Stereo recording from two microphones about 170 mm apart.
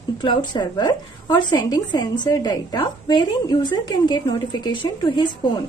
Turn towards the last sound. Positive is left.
turn(degrees=25)  # may be behind; listen again after turning